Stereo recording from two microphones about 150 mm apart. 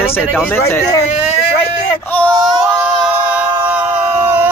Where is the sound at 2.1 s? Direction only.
5° left (ahead or behind).